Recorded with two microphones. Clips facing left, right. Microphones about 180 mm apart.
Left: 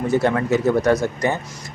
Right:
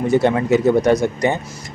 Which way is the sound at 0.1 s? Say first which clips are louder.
Right 3 dB; 15° right (ahead or behind).